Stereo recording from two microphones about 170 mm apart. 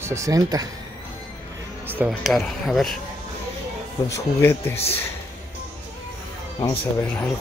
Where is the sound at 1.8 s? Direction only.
10° right (ahead or behind).